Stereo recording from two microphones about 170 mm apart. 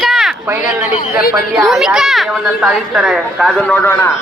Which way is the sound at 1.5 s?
Centre (ahead or behind).